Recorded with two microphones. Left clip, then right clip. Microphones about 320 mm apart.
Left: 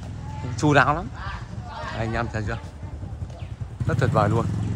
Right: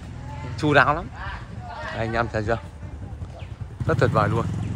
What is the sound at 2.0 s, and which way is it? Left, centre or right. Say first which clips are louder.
Speech: right 5 dB; centre.